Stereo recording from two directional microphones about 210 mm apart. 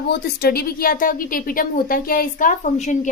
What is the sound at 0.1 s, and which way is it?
A woman's voice, 45° left (ahead or behind).